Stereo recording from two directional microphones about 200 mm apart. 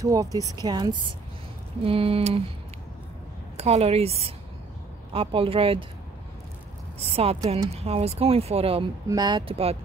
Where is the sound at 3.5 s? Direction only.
30° right (ahead or behind).